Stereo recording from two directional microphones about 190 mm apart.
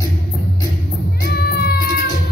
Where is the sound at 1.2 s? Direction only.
55° left (ahead or behind).